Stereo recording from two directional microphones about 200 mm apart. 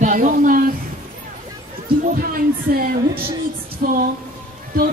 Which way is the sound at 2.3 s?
45° right (ahead or behind).